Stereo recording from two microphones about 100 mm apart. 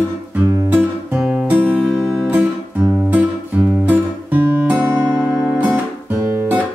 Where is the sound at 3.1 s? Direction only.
15° right (ahead or behind).